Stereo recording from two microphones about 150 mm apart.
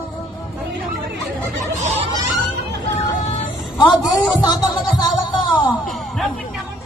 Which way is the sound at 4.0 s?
25° left (ahead or behind).